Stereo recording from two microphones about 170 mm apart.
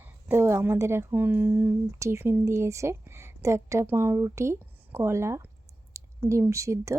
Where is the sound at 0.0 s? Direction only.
15° right (ahead or behind).